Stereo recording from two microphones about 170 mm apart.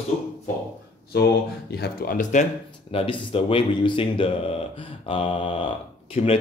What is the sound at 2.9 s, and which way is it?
Speech, 30° left (ahead or behind).